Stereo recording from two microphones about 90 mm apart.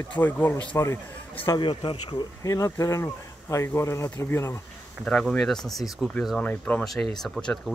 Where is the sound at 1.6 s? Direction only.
70° left (ahead or behind).